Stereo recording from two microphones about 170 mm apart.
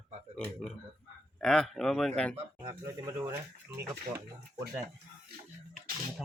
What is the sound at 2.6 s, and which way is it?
Speech, 20° right (ahead or behind).